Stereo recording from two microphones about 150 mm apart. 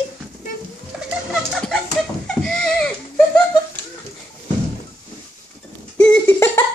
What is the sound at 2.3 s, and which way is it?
Goat, 5° left (ahead or behind).